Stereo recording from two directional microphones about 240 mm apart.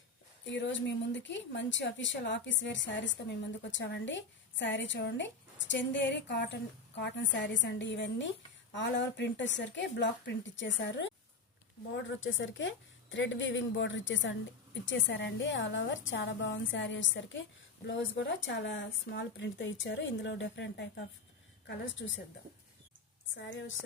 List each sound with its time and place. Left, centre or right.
0.4 s a woman's voice: left
23.5 s a woman's voice: left